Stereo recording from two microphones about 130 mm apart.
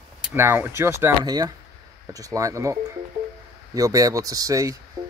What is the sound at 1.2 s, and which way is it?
Speech, 30° right (ahead or behind).